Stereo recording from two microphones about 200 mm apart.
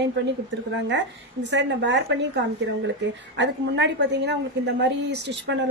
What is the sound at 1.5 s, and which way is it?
A woman's voice, 60° right (ahead or behind).